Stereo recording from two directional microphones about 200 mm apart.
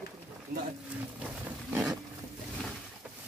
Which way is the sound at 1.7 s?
5° right (ahead or behind).